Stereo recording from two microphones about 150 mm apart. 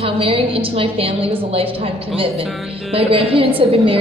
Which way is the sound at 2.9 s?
40° right (ahead or behind).